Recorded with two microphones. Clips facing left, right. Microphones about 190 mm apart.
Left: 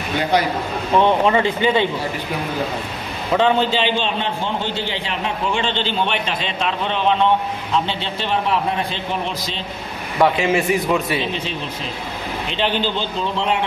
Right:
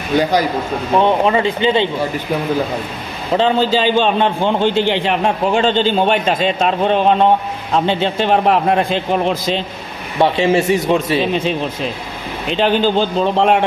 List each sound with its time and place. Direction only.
0.9 s a man's voice: 20° right (ahead or behind)
3.3 s a man's voice: 35° right (ahead or behind); by 9.4 s 50° right (ahead or behind)
10.1 s a man's voice: 30° right (ahead or behind)
12.4 s a man's voice: 45° right (ahead or behind)